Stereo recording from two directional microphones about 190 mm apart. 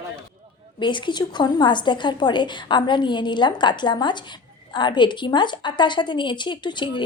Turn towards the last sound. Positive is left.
turn(degrees=25)  # may be behind; listen again after turning